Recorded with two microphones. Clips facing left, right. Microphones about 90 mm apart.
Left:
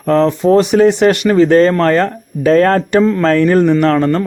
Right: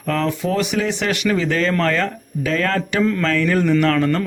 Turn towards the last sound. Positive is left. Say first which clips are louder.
# left 5 dB
turn(degrees=30)  # may be behind; listen again after turning